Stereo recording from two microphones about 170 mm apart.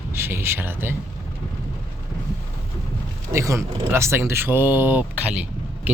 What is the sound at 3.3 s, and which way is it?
Speech, 15° right (ahead or behind).